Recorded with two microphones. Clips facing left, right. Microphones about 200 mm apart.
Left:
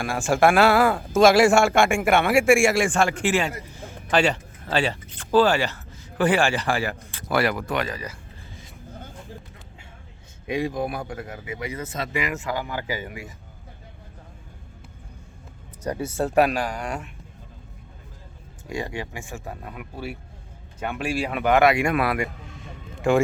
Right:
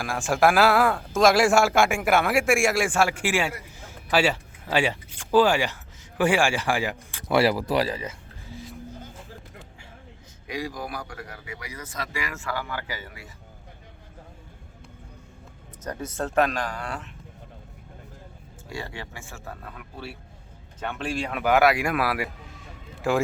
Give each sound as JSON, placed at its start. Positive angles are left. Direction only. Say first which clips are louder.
{"t": 0.0, "sound": "a man's voice", "louder": "left 2 dB", "side_deg": 0}
{"t": 7.3, "sound": "speech", "louder": "right 2 dB", "side_deg": -30}
{"t": 10.4, "sound": "speech", "louder": "left 7 dB", "side_deg": 25}
{"t": 15.8, "sound": "speech", "louder": "left 5 dB", "side_deg": 10}
{"t": 18.7, "sound": "speech", "louder": "left 6 dB", "side_deg": 15}